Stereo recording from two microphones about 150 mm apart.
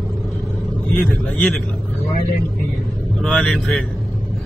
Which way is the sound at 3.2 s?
5° left (ahead or behind).